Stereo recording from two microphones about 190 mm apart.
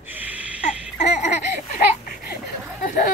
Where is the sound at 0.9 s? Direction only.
40° left (ahead or behind).